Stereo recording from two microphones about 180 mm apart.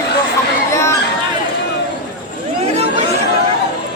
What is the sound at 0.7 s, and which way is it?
Chatter, 15° left (ahead or behind).